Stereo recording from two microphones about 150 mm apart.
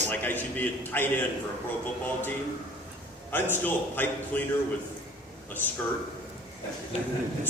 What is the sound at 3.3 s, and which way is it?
Speech, 15° left (ahead or behind).